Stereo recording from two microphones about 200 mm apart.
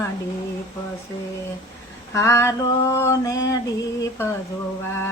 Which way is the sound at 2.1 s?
15° left (ahead or behind).